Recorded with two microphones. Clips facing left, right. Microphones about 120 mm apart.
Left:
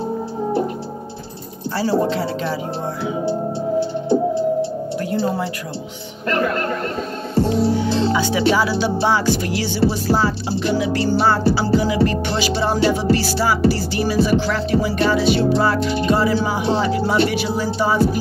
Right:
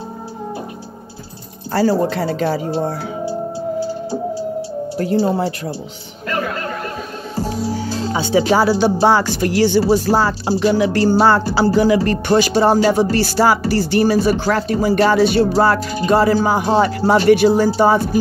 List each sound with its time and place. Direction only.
1.7 s music: 50° right (ahead or behind)
4.9 s speech: 30° right (ahead or behind)
6.4 s a sound: 50° left (ahead or behind)
7.7 s music: 40° right (ahead or behind); by 11.1 s 55° right (ahead or behind)
11.1 s music: 75° right (ahead or behind); by 17.2 s 50° right (ahead or behind)
17.3 s speech: 55° right (ahead or behind)
17.7 s music: 50° right (ahead or behind)